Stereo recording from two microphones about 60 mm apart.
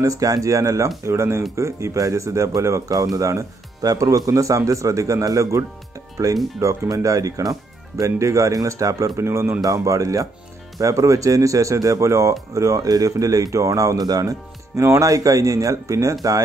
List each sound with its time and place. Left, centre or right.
0.0 s speech: right
9.2 s speech: right
9.6 s speech: right
14.8 s speech: right